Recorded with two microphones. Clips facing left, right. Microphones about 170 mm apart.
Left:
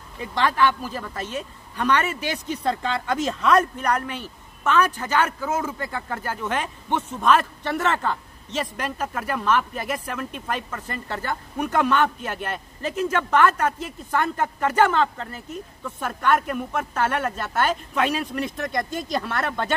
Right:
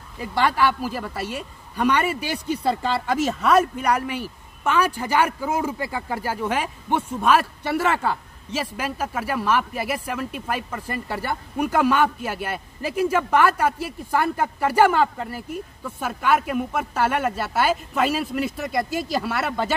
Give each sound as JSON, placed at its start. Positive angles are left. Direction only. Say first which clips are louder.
{"t": 0.2, "sound": "a woman's voice", "louder": "even", "side_deg": -10}